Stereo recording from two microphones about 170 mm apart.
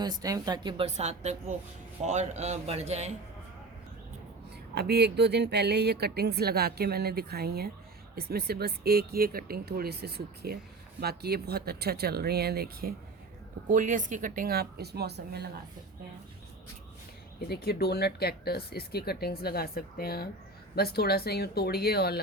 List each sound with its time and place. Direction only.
0.0 s speech: 20° right (ahead or behind)
0.9 s a man's voice: 40° right (ahead or behind)
4.7 s speech: 70° right (ahead or behind)
13.7 s speech: 50° right (ahead or behind); by 15.4 s 75° right (ahead or behind)
17.5 s speech: 70° left (ahead or behind)